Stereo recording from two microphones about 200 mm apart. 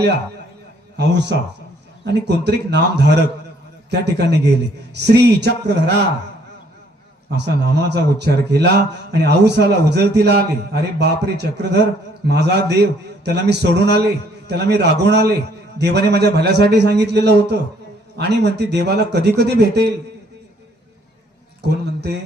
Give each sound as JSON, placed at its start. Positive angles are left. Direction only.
{"t": 0.9, "sound": "speech", "side_deg": -60}
{"t": 7.3, "sound": "speech", "side_deg": -60}
{"t": 21.6, "sound": "a man's voice", "side_deg": -55}